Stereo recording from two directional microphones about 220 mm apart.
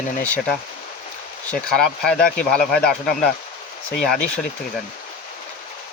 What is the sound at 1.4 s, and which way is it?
Speech, 5° left (ahead or behind).